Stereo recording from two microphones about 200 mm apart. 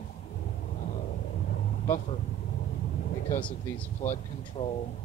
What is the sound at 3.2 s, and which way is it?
Speech, 10° left (ahead or behind).